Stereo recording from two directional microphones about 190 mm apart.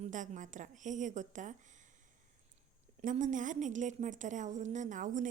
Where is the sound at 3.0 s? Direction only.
40° right (ahead or behind).